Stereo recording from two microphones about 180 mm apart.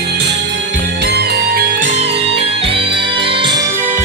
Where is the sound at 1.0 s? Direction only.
65° right (ahead or behind).